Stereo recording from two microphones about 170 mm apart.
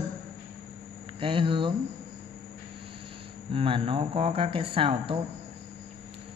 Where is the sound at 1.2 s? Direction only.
30° right (ahead or behind).